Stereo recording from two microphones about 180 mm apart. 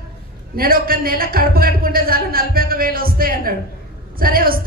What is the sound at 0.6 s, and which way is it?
A woman's voice, 55° right (ahead or behind).